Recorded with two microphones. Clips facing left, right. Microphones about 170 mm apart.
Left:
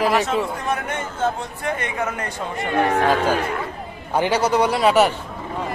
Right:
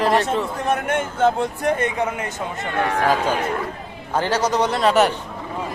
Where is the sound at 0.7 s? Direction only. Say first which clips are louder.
Right 4 dB; 50° right (ahead or behind).